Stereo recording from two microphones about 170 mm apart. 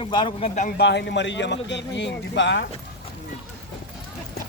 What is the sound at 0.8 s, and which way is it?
A man's voice, 90° left.